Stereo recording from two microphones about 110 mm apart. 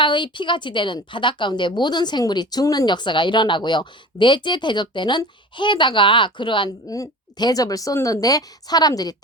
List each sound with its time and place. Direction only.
0.0 s a woman's voice: 45° left (ahead or behind)
6.8 s a woman's voice: 30° left (ahead or behind)